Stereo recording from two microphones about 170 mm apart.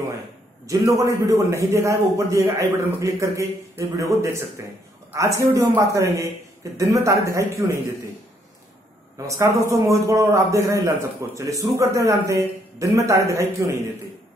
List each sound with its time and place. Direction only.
0.7 s a man's voice: 20° right (ahead or behind)
9.3 s a man's voice: 20° right (ahead or behind)